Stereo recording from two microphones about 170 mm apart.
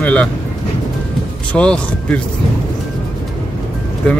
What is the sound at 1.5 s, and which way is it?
Speech, 5° left (ahead or behind).